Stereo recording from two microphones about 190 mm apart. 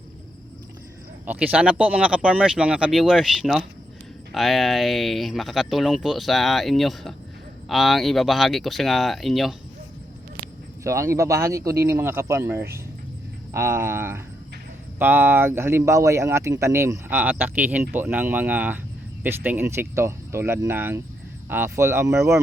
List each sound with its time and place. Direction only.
1.3 s speech: 10° right (ahead or behind)
10.8 s speech: 15° right (ahead or behind)